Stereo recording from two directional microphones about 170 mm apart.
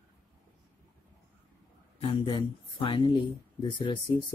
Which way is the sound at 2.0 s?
30° left (ahead or behind).